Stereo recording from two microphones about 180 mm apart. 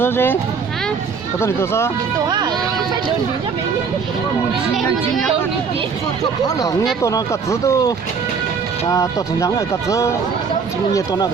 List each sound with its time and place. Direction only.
0.0 s speech: 10° left (ahead or behind)
1.4 s speech: 15° left (ahead or behind)
2.1 s speech: 25° right (ahead or behind)
4.7 s a woman's voice: centre (ahead or behind)
6.6 s speech: 20° left (ahead or behind)